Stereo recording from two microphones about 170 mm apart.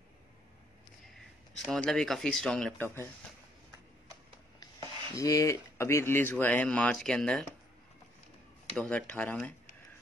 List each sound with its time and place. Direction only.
1.7 s speech: 5° left (ahead or behind)
4.6 s speech: 20° left (ahead or behind); by 7.4 s 5° left (ahead or behind)
8.7 s speech: 5° left (ahead or behind)